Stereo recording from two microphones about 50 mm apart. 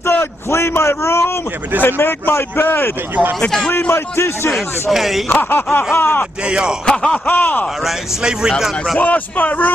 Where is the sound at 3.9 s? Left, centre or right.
Left.